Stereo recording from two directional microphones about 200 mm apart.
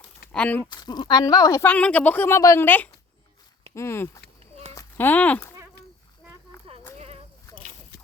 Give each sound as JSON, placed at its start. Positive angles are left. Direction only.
{"t": 0.3, "sound": "speech", "side_deg": 5}
{"t": 0.7, "sound": "speech", "side_deg": 20}
{"t": 4.7, "sound": "a sound", "side_deg": 15}
{"t": 6.7, "sound": "sheep", "side_deg": -30}